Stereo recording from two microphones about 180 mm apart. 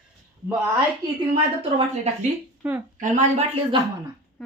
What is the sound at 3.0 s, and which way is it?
Speech, 40° right (ahead or behind).